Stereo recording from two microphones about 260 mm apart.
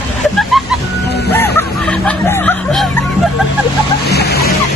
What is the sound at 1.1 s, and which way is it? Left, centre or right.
Music, left.